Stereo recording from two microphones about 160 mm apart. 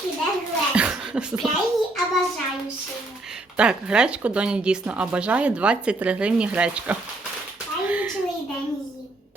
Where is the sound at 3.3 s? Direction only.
5° right (ahead or behind).